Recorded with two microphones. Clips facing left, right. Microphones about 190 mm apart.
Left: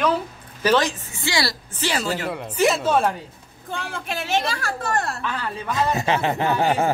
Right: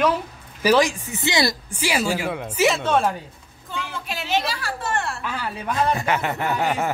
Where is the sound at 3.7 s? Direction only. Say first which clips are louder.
Left 2 dB; 50° left (ahead or behind).